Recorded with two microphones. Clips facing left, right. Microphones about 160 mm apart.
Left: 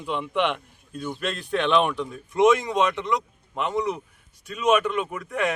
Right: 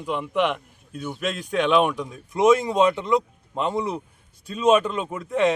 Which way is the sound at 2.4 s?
35° right (ahead or behind).